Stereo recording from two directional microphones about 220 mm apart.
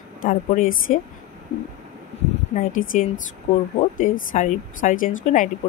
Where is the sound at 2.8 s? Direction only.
35° left (ahead or behind).